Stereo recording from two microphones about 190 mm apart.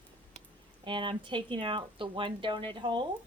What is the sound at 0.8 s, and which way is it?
Speech, 25° right (ahead or behind).